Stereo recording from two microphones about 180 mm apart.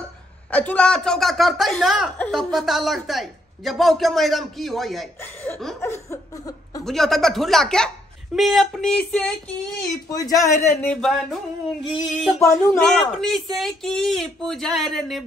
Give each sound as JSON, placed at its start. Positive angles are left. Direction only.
{"t": 0.5, "sound": "speech", "side_deg": 5}
{"t": 5.8, "sound": "a sound", "side_deg": 15}
{"t": 6.8, "sound": "speech", "side_deg": 0}
{"t": 10.0, "sound": "speech", "side_deg": 20}
{"t": 12.4, "sound": "speech", "side_deg": 15}
{"t": 12.8, "sound": "speech", "side_deg": 0}